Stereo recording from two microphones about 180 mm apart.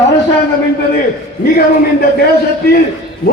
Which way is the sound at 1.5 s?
60° left (ahead or behind).